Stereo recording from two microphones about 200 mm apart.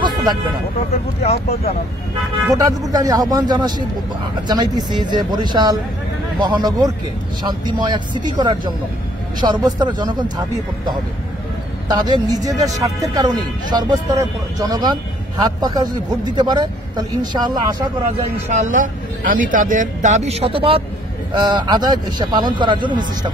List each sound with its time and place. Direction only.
0.0 s a sound: 20° right (ahead or behind)
1.2 s speech: 30° left (ahead or behind)
2.5 s speech: 20° right (ahead or behind)
11.9 s speech: 20° right (ahead or behind)
18.5 s speech: 40° right (ahead or behind); by 23.3 s 20° right (ahead or behind)